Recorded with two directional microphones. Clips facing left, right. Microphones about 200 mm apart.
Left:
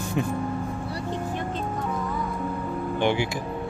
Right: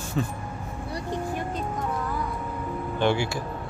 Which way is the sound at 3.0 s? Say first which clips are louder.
Right 1 dB; 15° left (ahead or behind).